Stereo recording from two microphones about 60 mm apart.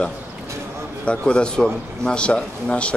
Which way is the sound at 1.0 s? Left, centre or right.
Centre.